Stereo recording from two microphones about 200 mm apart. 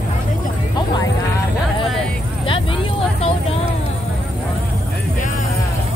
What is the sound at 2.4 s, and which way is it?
Vehicle, 25° left (ahead or behind).